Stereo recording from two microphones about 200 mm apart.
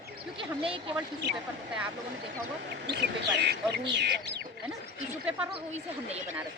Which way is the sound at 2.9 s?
60° right (ahead or behind).